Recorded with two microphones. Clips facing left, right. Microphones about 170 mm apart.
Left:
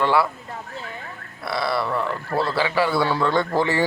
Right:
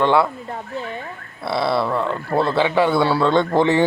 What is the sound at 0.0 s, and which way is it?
Speech, 20° right (ahead or behind).